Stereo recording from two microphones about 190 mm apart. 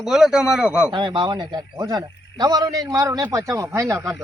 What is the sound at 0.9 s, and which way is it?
Speech, 25° right (ahead or behind).